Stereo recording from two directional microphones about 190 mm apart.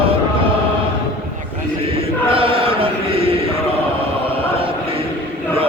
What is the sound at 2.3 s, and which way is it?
Mantra, 30° right (ahead or behind).